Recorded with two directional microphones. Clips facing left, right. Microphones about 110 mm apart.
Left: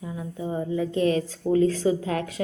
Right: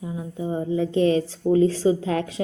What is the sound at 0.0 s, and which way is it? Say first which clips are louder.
A woman's voice: right 2 dB; 20° right (ahead or behind).